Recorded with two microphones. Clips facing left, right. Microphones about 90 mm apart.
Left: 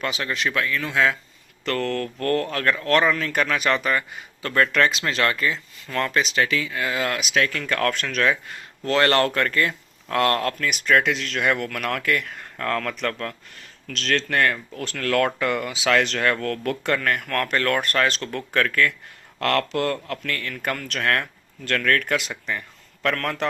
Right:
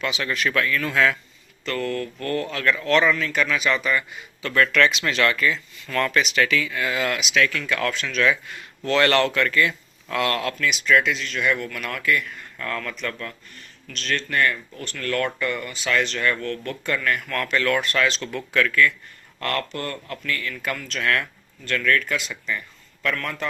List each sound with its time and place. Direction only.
0.0 s speech: 35° left (ahead or behind); by 1.1 s 20° left (ahead or behind)
1.6 s speech: 65° left (ahead or behind)
13.8 s speech: 85° left
17.0 s speech: 55° left (ahead or behind)
19.4 s speech: 70° left (ahead or behind); by 21.2 s 50° left (ahead or behind)
21.6 s speech: 65° left (ahead or behind)